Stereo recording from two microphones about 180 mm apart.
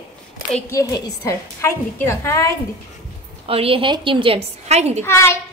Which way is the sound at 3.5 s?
30° right (ahead or behind).